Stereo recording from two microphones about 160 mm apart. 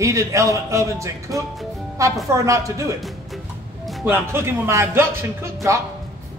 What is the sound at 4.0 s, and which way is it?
A man's voice, 15° right (ahead or behind).